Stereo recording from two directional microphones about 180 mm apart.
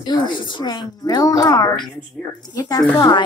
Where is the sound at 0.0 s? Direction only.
25° left (ahead or behind).